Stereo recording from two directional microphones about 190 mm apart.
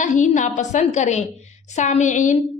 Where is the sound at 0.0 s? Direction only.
40° left (ahead or behind).